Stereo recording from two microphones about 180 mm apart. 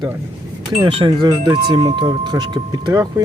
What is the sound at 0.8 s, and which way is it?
Speech, 30° right (ahead or behind).